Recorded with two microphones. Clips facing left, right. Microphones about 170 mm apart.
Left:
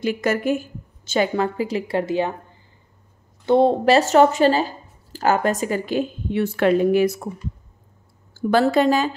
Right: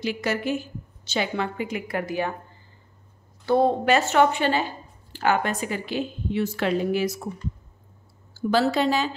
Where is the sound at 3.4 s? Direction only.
20° left (ahead or behind).